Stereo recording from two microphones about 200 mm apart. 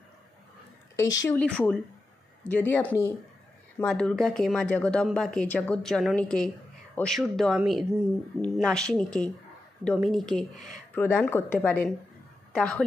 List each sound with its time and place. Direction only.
0.9 s speech: 15° left (ahead or behind)
1.4 s speech: 5° left (ahead or behind)
10.5 s speech: 40° left (ahead or behind)
11.0 s speech: 10° left (ahead or behind)